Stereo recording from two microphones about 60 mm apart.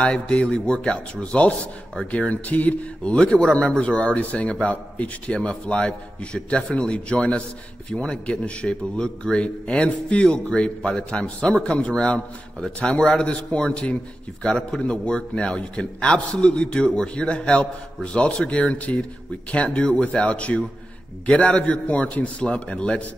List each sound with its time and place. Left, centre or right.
0.0 s a man's voice: centre